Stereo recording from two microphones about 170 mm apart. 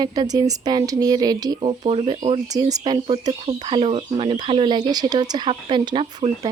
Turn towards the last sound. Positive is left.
turn(degrees=-30)  # may be behind; listen again after turning